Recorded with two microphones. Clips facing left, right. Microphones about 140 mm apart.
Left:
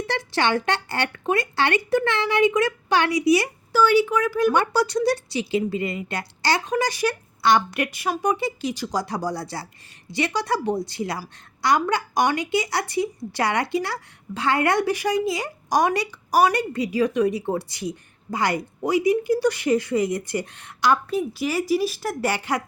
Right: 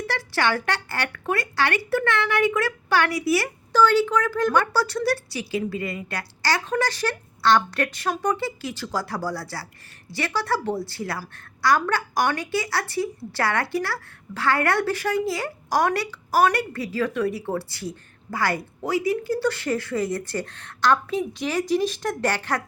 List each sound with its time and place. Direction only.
0.1 s a woman's voice: 20° left (ahead or behind)